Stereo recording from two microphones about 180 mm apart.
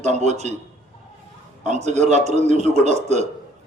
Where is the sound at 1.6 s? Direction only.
40° right (ahead or behind).